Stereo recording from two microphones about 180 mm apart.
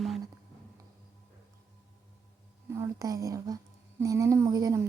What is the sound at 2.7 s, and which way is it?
A woman's voice, 15° right (ahead or behind).